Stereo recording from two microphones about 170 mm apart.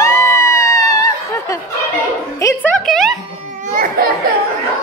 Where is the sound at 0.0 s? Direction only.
15° left (ahead or behind).